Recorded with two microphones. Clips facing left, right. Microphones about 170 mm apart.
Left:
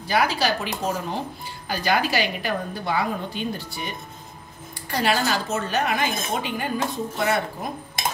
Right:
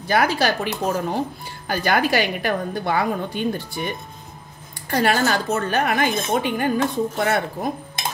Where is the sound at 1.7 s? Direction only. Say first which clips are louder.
Right 3 dB; 55° right (ahead or behind).